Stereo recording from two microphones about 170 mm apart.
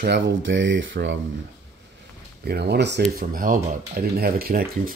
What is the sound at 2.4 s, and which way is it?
Speech, 75° right (ahead or behind).